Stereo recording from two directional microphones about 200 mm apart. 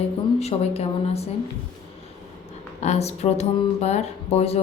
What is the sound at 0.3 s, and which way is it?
Speech, 30° left (ahead or behind).